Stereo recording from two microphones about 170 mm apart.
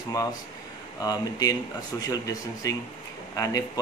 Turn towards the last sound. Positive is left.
turn(degrees=20)  # may be behind; listen again after turning